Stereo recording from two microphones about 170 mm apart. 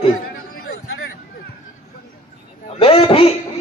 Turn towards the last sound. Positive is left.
turn(degrees=35)  # may be behind; listen again after turning